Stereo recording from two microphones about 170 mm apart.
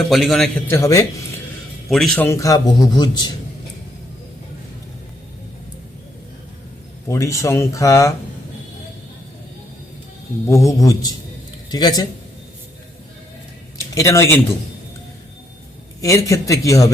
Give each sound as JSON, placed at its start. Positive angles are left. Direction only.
{"t": 0.1, "sound": "a man's voice", "side_deg": 0}
{"t": 0.7, "sound": "speech", "side_deg": 20}
{"t": 1.9, "sound": "a man's voice", "side_deg": 0}
{"t": 2.2, "sound": "a man's voice", "side_deg": 20}
{"t": 7.1, "sound": "speech", "side_deg": 15}
{"t": 10.5, "sound": "a man's voice", "side_deg": 20}
{"t": 13.7, "sound": "speech", "side_deg": 20}
{"t": 16.0, "sound": "a man's voice", "side_deg": 20}